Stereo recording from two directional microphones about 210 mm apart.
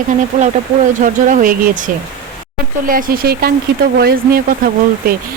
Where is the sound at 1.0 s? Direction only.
40° right (ahead or behind).